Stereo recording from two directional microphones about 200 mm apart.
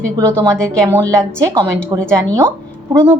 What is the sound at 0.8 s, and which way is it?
Speech, 15° right (ahead or behind).